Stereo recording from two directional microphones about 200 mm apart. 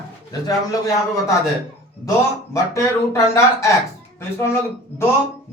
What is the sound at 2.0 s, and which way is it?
Speech, 15° left (ahead or behind).